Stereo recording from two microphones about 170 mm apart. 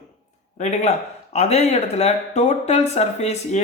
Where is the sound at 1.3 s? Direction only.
40° left (ahead or behind).